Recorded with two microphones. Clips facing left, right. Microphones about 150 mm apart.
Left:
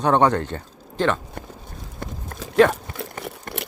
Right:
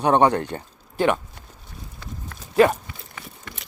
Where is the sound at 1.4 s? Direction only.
55° left (ahead or behind).